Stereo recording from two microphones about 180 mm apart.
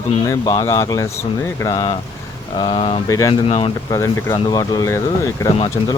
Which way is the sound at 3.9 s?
15° left (ahead or behind).